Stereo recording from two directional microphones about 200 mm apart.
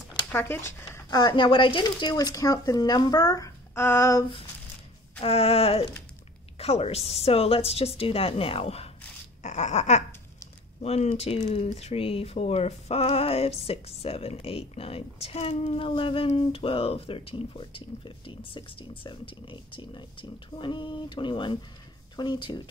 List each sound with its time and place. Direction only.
0.3 s speech: 10° left (ahead or behind)
5.2 s speech: 30° left (ahead or behind)
9.4 s a sound: 35° left (ahead or behind)
10.8 s speech: 30° left (ahead or behind)